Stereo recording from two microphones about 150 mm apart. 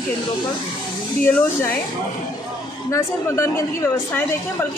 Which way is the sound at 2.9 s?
20° left (ahead or behind).